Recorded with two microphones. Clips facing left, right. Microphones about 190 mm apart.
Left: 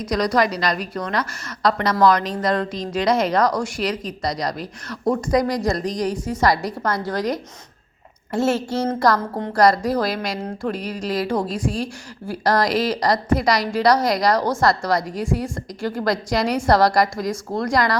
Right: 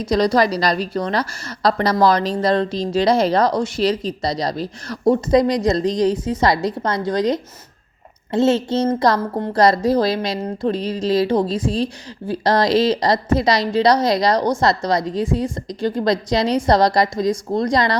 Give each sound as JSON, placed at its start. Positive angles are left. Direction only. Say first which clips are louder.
{"t": 0.0, "sound": "a woman's voice", "louder": "right 3 dB", "side_deg": -25}